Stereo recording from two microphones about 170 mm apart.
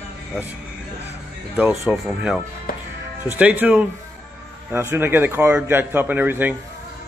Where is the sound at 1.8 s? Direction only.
10° right (ahead or behind).